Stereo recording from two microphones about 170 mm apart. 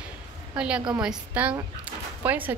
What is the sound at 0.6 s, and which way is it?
A woman's voice, 5° right (ahead or behind).